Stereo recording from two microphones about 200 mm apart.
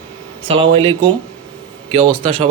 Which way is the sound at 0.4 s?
25° right (ahead or behind).